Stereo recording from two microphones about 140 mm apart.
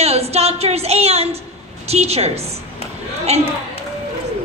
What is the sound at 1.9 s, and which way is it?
A woman's voice, 50° right (ahead or behind).